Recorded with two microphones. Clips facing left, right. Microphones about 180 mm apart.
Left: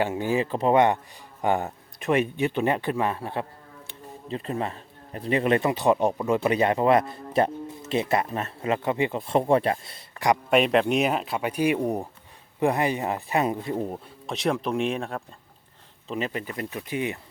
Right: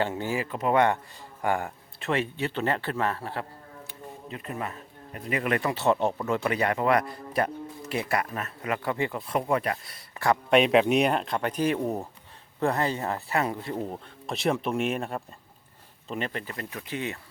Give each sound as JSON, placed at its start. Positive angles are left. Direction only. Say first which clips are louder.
{"t": 0.0, "sound": "speech", "louder": "left 4 dB", "side_deg": 15}
{"t": 0.4, "sound": "speech", "louder": "left 5 dB", "side_deg": 30}
{"t": 0.7, "sound": "speech", "louder": "left 2 dB", "side_deg": 20}
{"t": 3.8, "sound": "speech", "louder": "left 5 dB", "side_deg": 30}
{"t": 10.5, "sound": "speech", "louder": "right 2 dB", "side_deg": 0}
{"t": 13.9, "sound": "speech", "louder": "left 1 dB", "side_deg": 0}
{"t": 16.9, "sound": "speech", "louder": "left 4 dB", "side_deg": 15}